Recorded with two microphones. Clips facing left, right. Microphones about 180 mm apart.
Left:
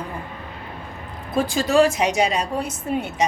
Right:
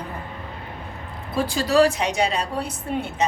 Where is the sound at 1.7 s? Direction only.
35° right (ahead or behind).